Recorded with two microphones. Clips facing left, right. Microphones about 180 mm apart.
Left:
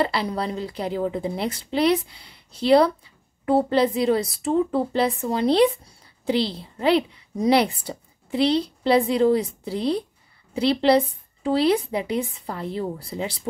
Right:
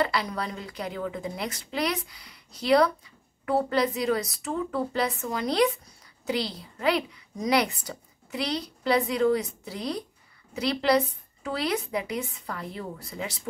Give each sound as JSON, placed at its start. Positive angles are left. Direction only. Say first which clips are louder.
{"t": 0.0, "sound": "a woman's voice", "louder": "left 4 dB", "side_deg": 30}